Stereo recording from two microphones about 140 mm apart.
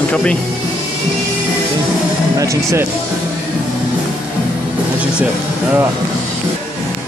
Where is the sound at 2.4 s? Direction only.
20° right (ahead or behind).